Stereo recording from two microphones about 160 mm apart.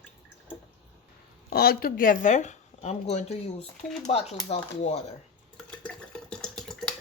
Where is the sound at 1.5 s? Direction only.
70° left (ahead or behind); by 5.0 s 40° left (ahead or behind).